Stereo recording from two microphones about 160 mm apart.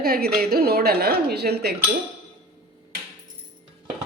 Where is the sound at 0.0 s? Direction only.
75° right (ahead or behind).